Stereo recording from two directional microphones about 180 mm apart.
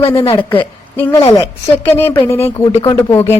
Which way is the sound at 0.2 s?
30° left (ahead or behind).